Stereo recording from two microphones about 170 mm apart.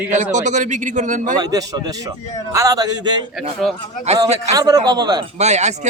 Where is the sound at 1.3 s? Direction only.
20° right (ahead or behind).